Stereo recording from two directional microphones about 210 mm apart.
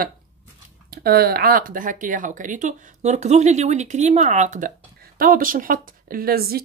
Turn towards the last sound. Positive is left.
turn(degrees=-45)  # may be behind; listen again after turning